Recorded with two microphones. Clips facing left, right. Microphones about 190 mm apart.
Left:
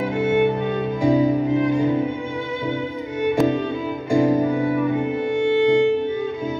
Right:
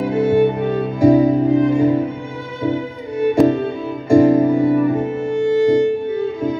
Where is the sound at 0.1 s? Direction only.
35° right (ahead or behind).